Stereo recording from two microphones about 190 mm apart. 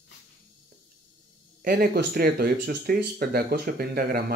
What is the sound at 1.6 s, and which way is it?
Speech, 50° right (ahead or behind).